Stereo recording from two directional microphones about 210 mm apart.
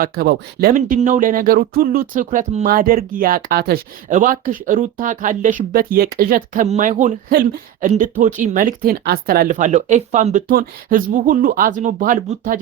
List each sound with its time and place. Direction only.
0.0 s speech: 45° right (ahead or behind)